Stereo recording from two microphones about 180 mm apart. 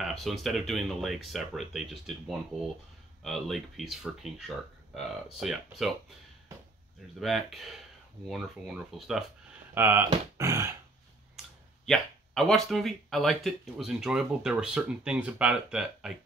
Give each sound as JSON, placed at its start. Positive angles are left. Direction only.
{"t": 0.0, "sound": "speech", "side_deg": 0}
{"t": 7.2, "sound": "speech", "side_deg": 0}
{"t": 9.8, "sound": "speech", "side_deg": -10}
{"t": 11.8, "sound": "speech", "side_deg": 5}